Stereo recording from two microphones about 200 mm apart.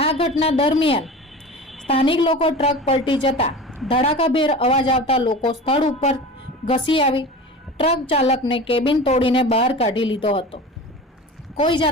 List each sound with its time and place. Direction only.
0.0 s a woman's voice: 30° left (ahead or behind)
3.5 s a sound: centre (ahead or behind)
3.8 s a woman's voice: 30° left (ahead or behind)